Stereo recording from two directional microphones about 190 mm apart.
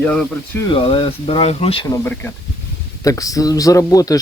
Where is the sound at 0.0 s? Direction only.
5° left (ahead or behind).